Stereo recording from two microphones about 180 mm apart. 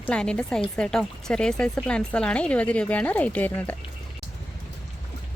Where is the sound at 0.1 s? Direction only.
5° left (ahead or behind).